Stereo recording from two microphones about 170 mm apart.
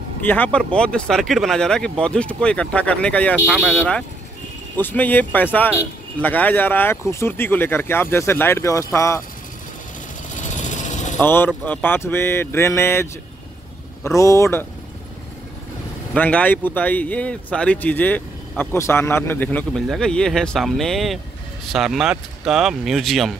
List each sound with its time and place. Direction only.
0.2 s speech: 10° left (ahead or behind)
10.3 s vehicle: 45° left (ahead or behind)
11.1 s speech: 10° left (ahead or behind)
16.1 s speech: 10° left (ahead or behind)